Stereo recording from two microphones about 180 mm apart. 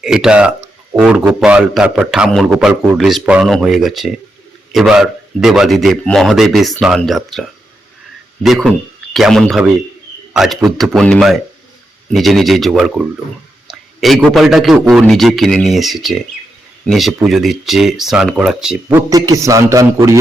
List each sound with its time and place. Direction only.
0.0 s a man's voice: 5° right (ahead or behind)
19.1 s a man's voice: 20° right (ahead or behind)